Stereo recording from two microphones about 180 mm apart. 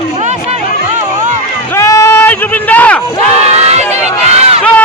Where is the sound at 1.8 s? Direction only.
20° left (ahead or behind).